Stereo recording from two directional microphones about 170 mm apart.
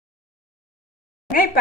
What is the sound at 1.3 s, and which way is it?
Speech, 55° left (ahead or behind).